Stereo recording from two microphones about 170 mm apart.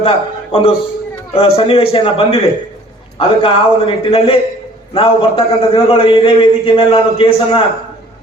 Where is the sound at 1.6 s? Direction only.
35° left (ahead or behind).